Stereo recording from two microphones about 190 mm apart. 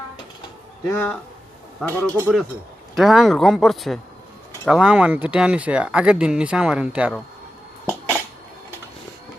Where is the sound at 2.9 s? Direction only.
Centre (ahead or behind).